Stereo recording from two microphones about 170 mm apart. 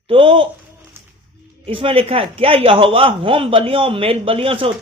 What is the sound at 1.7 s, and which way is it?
Speech, 35° right (ahead or behind).